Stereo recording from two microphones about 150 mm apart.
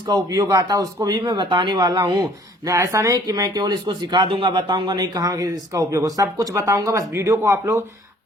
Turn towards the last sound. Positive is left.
turn(degrees=-15)  # may be behind; listen again after turning